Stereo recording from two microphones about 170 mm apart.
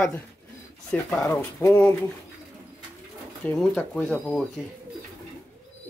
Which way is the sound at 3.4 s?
10° left (ahead or behind).